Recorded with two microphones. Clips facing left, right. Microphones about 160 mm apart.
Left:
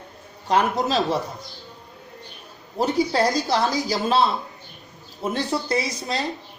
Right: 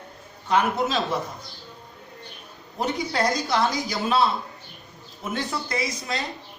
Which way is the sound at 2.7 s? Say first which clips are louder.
Left 5 dB; 35° left (ahead or behind).